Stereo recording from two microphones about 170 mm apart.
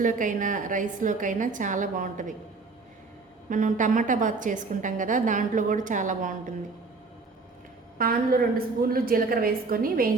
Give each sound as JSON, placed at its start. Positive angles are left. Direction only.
{"t": 0.0, "sound": "a woman's voice", "side_deg": -50}
{"t": 3.5, "sound": "a woman's voice", "side_deg": -50}
{"t": 7.9, "sound": "a woman's voice", "side_deg": -60}